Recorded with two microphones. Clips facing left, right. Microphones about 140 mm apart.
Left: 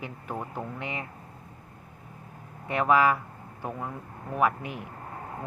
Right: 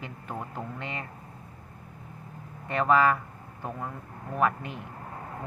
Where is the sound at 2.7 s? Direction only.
10° left (ahead or behind).